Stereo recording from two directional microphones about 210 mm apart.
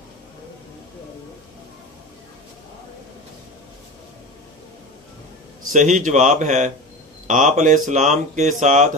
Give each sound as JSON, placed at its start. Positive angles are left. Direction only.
{"t": 5.7, "sound": "speech", "side_deg": -35}